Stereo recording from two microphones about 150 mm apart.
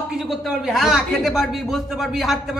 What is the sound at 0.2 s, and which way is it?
A man's voice, centre (ahead or behind).